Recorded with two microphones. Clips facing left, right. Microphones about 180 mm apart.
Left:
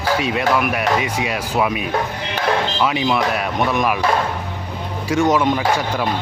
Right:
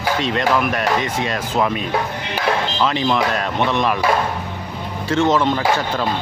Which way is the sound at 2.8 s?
10° left (ahead or behind).